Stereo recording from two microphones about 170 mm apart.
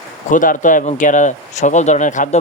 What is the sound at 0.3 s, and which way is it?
Speech, 50° left (ahead or behind).